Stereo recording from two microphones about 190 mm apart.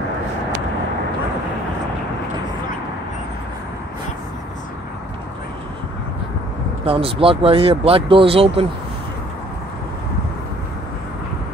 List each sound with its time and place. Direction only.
6.9 s speech: 30° right (ahead or behind)